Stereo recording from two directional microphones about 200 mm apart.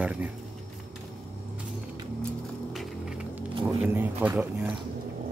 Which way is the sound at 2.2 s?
Centre (ahead or behind).